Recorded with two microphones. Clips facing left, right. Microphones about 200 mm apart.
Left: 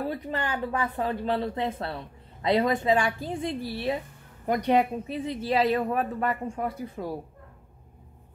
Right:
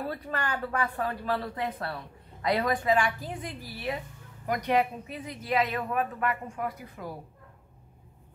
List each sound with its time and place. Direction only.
0.1 s a woman's voice: 20° left (ahead or behind)